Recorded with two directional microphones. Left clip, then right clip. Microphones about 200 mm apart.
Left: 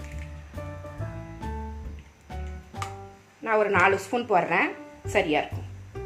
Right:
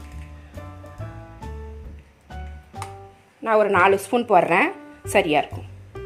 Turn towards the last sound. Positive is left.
turn(degrees=-55)  # may be behind; listen again after turning